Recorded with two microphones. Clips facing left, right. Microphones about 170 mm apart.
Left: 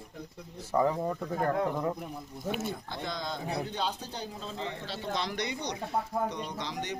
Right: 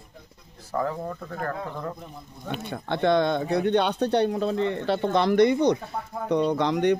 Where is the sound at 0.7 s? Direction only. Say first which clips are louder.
Left 1 dB; 15° left (ahead or behind).